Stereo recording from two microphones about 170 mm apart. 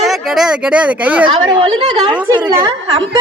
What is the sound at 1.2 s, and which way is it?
Speech, 30° right (ahead or behind).